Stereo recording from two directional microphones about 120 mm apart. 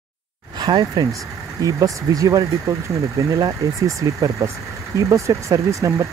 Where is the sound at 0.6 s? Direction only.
40° right (ahead or behind).